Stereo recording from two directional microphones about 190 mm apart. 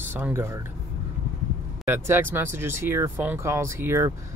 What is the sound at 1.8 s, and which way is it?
Speech, 15° right (ahead or behind).